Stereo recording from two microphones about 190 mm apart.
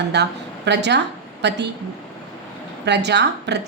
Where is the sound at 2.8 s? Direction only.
65° right (ahead or behind).